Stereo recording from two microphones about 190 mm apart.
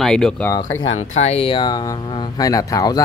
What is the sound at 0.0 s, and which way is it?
Speech, 5° left (ahead or behind).